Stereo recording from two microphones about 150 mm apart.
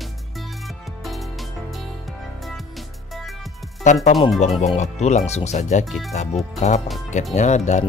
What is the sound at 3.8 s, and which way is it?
Speech, 50° left (ahead or behind).